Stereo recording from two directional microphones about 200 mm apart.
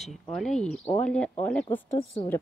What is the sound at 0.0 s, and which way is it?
A woman's voice, centre (ahead or behind).